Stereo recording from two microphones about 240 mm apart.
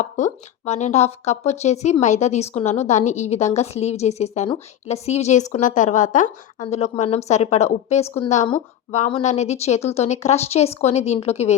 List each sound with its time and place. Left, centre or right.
0.0 s speech: left